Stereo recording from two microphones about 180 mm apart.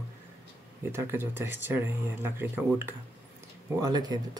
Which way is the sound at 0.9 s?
15° right (ahead or behind).